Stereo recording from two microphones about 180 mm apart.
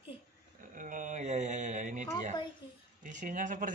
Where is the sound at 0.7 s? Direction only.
45° right (ahead or behind).